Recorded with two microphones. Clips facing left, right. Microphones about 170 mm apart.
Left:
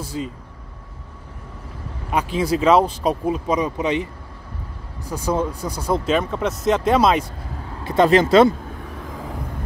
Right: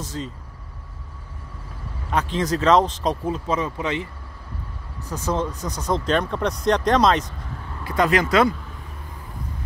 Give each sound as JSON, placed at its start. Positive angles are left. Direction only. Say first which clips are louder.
{"t": 0.0, "sound": "speech", "louder": "left 3 dB", "side_deg": 10}
{"t": 2.0, "sound": "speech", "louder": "left 2 dB", "side_deg": 10}
{"t": 7.8, "sound": "speech", "louder": "left 5 dB", "side_deg": 25}
{"t": 8.9, "sound": "vehicle", "louder": "left 8 dB", "side_deg": 90}